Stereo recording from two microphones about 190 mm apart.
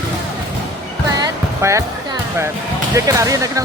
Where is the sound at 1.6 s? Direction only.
15° right (ahead or behind).